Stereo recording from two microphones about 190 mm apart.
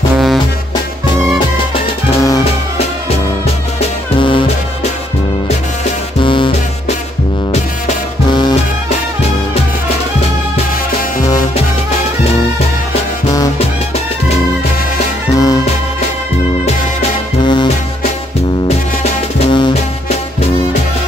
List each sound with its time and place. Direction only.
2.1 s music: 20° left (ahead or behind)
4.2 s music: 25° left (ahead or behind)
6.2 s music: 25° left (ahead or behind)
8.3 s music: 25° left (ahead or behind)
15.3 s music: 20° left (ahead or behind)
17.4 s music: 25° left (ahead or behind)
19.5 s music: 30° left (ahead or behind)